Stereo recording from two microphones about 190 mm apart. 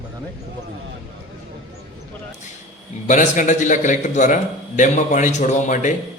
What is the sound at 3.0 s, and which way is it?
A man's voice, 40° left (ahead or behind).